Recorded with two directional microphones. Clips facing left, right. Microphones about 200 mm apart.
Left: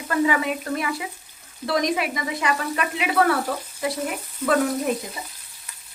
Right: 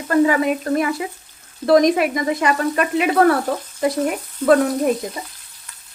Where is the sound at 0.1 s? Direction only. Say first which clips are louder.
Right 6 dB; 45° right (ahead or behind).